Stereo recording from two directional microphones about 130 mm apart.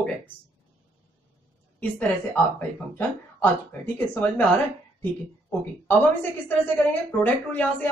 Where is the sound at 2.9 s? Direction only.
15° left (ahead or behind).